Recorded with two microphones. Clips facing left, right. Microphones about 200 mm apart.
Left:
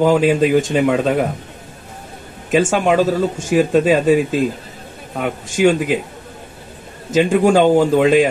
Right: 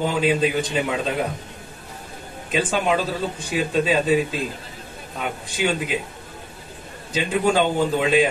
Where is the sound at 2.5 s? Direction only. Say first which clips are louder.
Left 7 dB; 45° left (ahead or behind).